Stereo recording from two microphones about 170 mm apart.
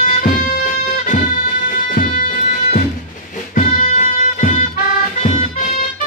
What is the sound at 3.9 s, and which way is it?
Music, 50° left (ahead or behind).